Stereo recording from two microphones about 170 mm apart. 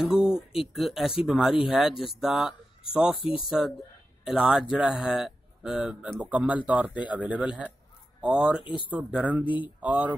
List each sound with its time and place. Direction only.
0.1 s a sound: 5° right (ahead or behind)
0.6 s speech: centre (ahead or behind)
8.6 s speech: 30° left (ahead or behind)
8.9 s speech: 10° right (ahead or behind)